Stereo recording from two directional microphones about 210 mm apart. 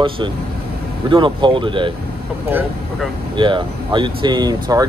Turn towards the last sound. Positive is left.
turn(degrees=-20)  # may be behind; listen again after turning